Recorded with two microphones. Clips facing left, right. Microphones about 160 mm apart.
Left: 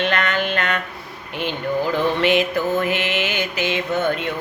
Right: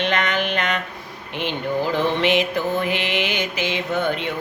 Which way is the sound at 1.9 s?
20° right (ahead or behind).